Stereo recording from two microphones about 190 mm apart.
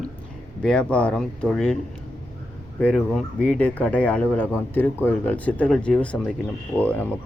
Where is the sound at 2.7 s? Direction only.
5° left (ahead or behind).